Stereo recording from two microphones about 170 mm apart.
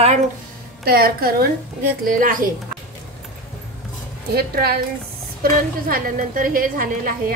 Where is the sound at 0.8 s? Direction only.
65° right (ahead or behind).